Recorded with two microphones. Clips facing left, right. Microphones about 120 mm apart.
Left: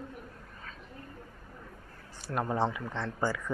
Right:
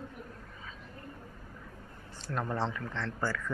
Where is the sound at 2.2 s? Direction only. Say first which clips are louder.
Left 3 dB; 10° left (ahead or behind).